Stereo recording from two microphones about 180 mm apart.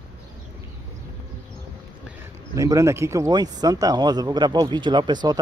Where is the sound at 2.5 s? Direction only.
20° right (ahead or behind).